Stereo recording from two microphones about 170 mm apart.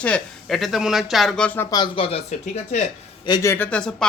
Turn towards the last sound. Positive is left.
turn(degrees=5)  # may be behind; listen again after turning